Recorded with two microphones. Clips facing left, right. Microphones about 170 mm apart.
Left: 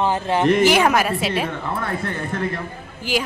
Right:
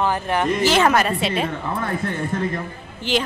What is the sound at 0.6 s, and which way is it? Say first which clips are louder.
Speech: left 1 dB; 10° left (ahead or behind).